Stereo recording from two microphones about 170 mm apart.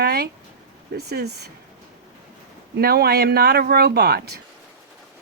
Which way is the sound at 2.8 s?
65° right (ahead or behind).